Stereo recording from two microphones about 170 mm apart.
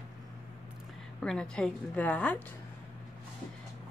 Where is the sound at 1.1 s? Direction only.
5° left (ahead or behind).